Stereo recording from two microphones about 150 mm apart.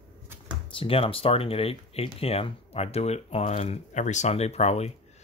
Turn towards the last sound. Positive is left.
turn(degrees=45)  # may be behind; listen again after turning